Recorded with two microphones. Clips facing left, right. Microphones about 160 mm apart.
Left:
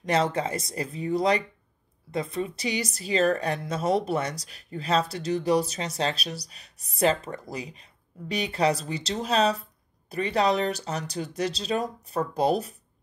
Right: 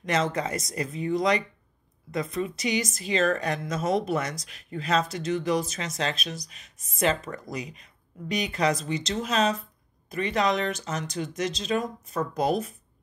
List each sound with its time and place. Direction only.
0.0 s speech: 35° left (ahead or behind)